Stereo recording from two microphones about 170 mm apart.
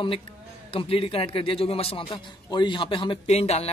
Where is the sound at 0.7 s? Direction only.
35° left (ahead or behind).